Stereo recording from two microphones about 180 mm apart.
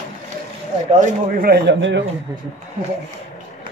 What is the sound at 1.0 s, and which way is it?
Speech, 55° right (ahead or behind).